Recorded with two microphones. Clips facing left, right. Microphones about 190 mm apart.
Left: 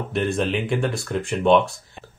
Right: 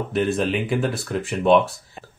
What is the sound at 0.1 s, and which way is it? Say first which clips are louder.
Speech: right 1 dB; centre (ahead or behind).